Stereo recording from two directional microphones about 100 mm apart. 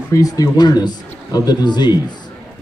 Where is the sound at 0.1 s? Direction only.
40° left (ahead or behind).